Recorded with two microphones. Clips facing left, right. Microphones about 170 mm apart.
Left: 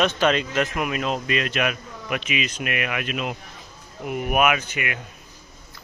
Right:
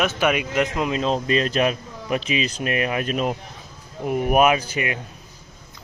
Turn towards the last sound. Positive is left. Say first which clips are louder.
# right 3 dB
turn(degrees=-30)  # may be behind; listen again after turning